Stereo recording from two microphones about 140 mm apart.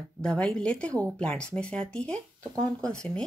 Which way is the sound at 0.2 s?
5° left (ahead or behind).